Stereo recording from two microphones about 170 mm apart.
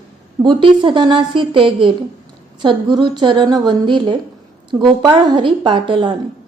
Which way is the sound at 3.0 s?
30° right (ahead or behind).